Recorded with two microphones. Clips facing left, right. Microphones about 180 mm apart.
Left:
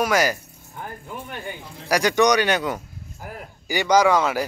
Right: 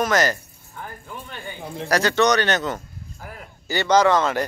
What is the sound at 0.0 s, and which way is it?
Speech, 10° left (ahead or behind).